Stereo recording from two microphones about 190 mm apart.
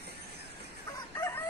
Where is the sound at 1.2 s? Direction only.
10° left (ahead or behind).